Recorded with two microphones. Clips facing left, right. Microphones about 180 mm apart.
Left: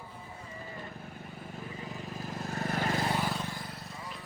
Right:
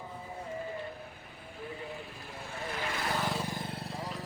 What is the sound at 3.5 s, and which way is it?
Vehicle, 30° right (ahead or behind).